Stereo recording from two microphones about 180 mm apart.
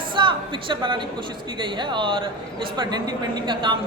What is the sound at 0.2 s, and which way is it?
A woman's voice, 25° right (ahead or behind).